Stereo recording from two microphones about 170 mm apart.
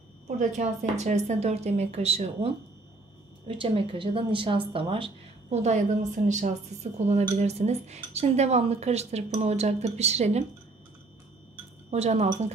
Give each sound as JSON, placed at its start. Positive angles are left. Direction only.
{"t": 0.4, "sound": "speech", "side_deg": -45}
{"t": 11.9, "sound": "speech", "side_deg": -40}